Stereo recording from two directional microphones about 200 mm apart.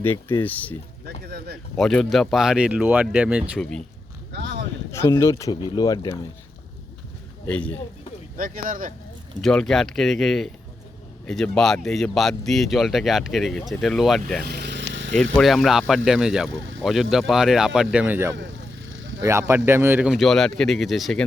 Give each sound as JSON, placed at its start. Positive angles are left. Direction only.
{"t": 0.0, "sound": "speech", "side_deg": 10}
{"t": 1.0, "sound": "a sound", "side_deg": -50}
{"t": 1.7, "sound": "speech", "side_deg": 5}
{"t": 4.3, "sound": "a sound", "side_deg": -55}
{"t": 4.9, "sound": "speech", "side_deg": 15}
{"t": 7.4, "sound": "speech", "side_deg": 5}
{"t": 8.4, "sound": "speech", "side_deg": -45}
{"t": 9.4, "sound": "speech", "side_deg": 0}
{"t": 14.4, "sound": "vehicle", "side_deg": -55}
{"t": 15.1, "sound": "speech", "side_deg": 5}